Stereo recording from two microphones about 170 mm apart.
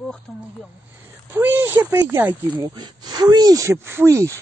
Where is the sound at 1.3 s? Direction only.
10° right (ahead or behind).